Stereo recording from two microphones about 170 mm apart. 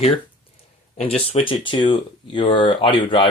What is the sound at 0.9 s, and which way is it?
Speech, 35° left (ahead or behind).